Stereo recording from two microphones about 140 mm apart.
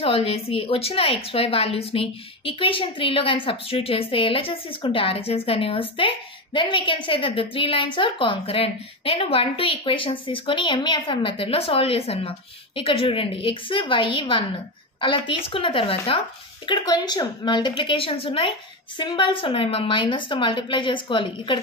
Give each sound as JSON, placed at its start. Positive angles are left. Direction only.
{"t": 0.0, "sound": "speech", "side_deg": 40}